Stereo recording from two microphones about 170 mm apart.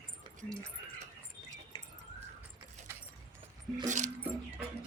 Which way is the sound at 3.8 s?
45° right (ahead or behind).